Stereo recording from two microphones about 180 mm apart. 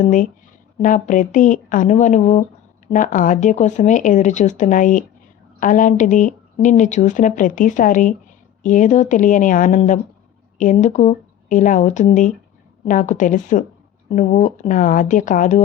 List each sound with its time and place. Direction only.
0.0 s speech: 45° left (ahead or behind)